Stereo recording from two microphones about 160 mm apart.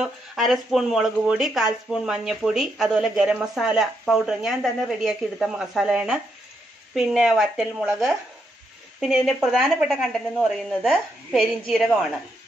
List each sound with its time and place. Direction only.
0.0 s speech: centre (ahead or behind)